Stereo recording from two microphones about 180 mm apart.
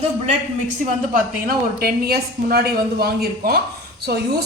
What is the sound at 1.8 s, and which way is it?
A woman's voice, 60° right (ahead or behind).